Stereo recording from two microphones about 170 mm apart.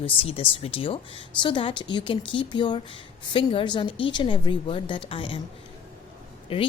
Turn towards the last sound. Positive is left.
turn(degrees=35)  # may be behind; listen again after turning